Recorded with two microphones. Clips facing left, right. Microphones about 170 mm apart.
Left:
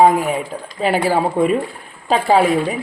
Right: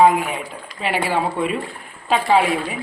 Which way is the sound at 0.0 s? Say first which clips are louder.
Left 2 dB; 40° left (ahead or behind).